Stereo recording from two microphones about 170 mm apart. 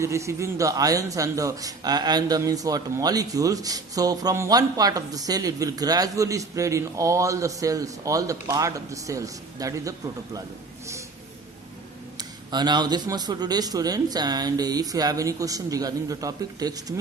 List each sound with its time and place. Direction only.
0.0 s a man's voice: 15° right (ahead or behind)
12.1 s a man's voice: 25° right (ahead or behind)